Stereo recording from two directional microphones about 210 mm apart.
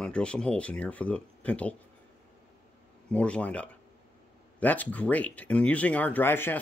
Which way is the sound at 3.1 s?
5° left (ahead or behind).